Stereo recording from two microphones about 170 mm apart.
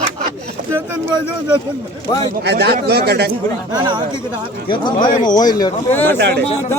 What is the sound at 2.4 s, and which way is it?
Speech, 70° right (ahead or behind).